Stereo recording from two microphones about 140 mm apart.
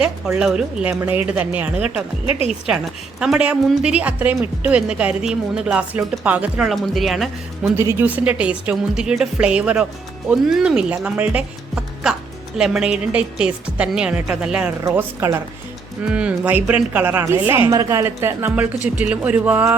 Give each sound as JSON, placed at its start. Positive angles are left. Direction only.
{"t": 0.3, "sound": "a woman's voice", "side_deg": -5}
{"t": 7.8, "sound": "a woman's voice", "side_deg": -15}
{"t": 14.8, "sound": "a woman's voice", "side_deg": -20}
{"t": 16.0, "sound": "speech", "side_deg": -10}